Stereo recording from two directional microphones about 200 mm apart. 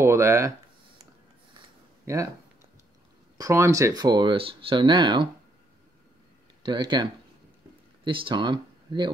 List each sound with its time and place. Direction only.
0.0 s speech: 15° right (ahead or behind)
3.3 s speech: 15° right (ahead or behind)
6.6 s speech: 20° right (ahead or behind)